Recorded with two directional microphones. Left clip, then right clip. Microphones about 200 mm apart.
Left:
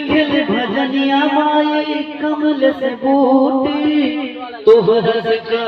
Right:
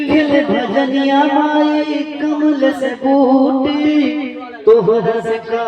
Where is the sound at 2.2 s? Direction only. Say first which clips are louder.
Right 1 dB; 40° right (ahead or behind).